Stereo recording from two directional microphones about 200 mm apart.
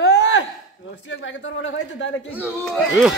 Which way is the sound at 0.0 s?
60° left (ahead or behind).